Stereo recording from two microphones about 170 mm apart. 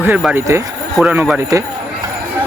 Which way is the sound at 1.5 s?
20° right (ahead or behind).